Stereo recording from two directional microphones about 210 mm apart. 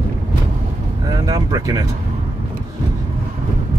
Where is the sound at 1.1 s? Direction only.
15° right (ahead or behind).